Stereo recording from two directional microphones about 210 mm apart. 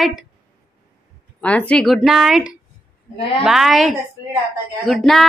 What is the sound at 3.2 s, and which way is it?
Speech, 25° left (ahead or behind).